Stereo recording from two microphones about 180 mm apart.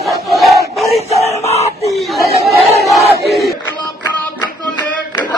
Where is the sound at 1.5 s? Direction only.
35° left (ahead or behind).